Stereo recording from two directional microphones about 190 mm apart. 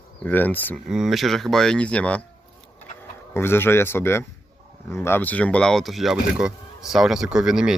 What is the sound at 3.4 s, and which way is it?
Speech, 10° left (ahead or behind).